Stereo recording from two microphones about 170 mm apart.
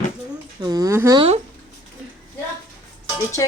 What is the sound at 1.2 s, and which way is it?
Speech, 35° right (ahead or behind).